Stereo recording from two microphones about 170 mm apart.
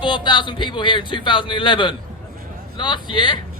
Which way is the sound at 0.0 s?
30° left (ahead or behind).